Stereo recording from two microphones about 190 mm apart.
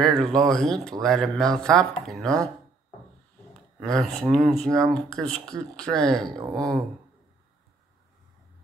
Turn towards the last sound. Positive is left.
turn(degrees=-20)  # may be behind; listen again after turning